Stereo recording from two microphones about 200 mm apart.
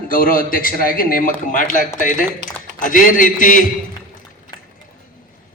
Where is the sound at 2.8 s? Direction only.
40° left (ahead or behind).